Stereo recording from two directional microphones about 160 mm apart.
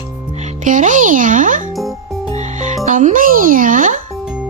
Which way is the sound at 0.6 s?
55° right (ahead or behind).